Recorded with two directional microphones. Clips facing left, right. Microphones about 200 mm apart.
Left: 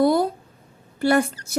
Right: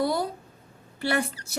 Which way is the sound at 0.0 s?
50° left (ahead or behind).